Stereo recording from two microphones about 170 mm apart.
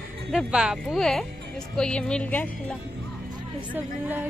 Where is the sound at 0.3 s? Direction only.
5° right (ahead or behind).